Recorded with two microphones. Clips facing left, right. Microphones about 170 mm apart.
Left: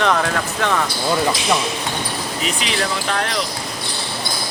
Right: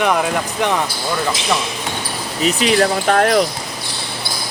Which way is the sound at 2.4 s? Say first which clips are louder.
Right 10 dB; 40° right (ahead or behind).